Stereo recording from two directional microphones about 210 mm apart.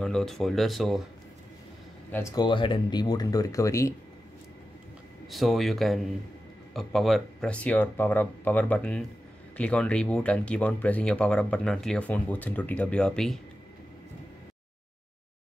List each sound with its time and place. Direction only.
0.0 s speech: centre (ahead or behind)
2.0 s speech: 10° left (ahead or behind)
5.3 s speech: centre (ahead or behind)